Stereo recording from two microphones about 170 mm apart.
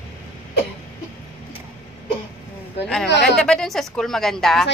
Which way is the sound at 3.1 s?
85° left.